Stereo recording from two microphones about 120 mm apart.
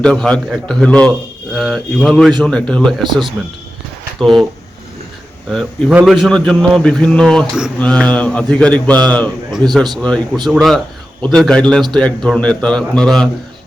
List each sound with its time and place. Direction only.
0.0 s mantra: 10° left (ahead or behind)
1.5 s speech: centre (ahead or behind)
2.4 s mantra: 10° left (ahead or behind)
4.2 s speech: centre (ahead or behind)
6.1 s speech: centre (ahead or behind)
7.8 s mantra: 10° left (ahead or behind)
9.6 s a man's voice: 35° right (ahead or behind)
10.0 s mantra: 10° left (ahead or behind)
10.5 s speech: centre (ahead or behind)
11.9 s mantra: 10° left (ahead or behind)